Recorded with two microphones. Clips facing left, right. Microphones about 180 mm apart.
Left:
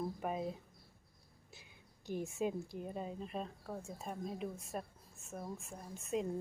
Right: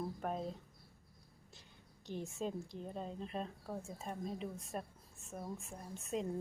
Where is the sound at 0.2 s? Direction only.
5° left (ahead or behind).